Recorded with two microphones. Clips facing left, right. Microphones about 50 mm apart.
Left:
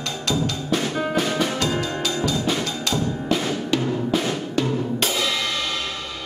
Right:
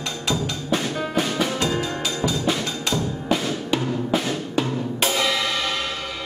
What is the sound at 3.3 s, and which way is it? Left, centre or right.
Music, centre.